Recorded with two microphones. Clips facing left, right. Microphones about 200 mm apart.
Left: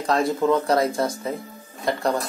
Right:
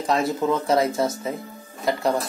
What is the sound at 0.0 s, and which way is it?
Speech, centre (ahead or behind).